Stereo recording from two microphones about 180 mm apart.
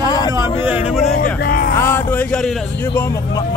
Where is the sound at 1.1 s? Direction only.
55° left (ahead or behind).